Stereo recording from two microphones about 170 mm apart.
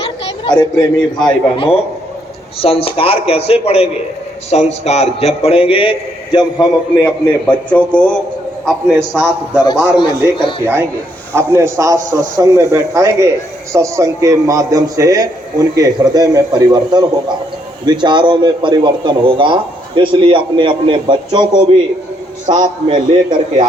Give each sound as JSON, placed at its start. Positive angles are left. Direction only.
{"t": 0.0, "sound": "a man's voice", "side_deg": 25}
{"t": 7.4, "sound": "a man's voice", "side_deg": 5}
{"t": 10.0, "sound": "a man's voice", "side_deg": 30}
{"t": 11.3, "sound": "a man's voice", "side_deg": -15}